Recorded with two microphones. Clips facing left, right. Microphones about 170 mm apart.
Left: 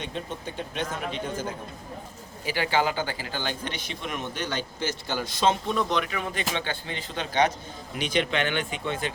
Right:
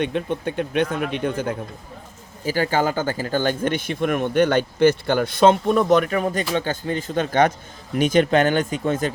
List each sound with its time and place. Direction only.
0.0 s speech: 60° right (ahead or behind)
2.4 s speech: 45° right (ahead or behind)